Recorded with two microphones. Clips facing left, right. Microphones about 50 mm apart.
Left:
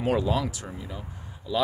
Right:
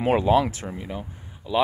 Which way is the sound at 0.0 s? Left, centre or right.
Right.